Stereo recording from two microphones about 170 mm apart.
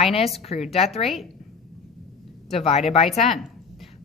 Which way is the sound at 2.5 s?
40° left (ahead or behind).